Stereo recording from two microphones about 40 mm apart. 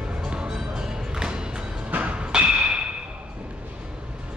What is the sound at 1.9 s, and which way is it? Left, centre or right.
Music, right.